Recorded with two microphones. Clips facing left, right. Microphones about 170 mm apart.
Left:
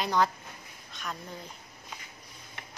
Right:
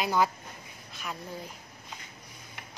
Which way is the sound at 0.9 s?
5° right (ahead or behind).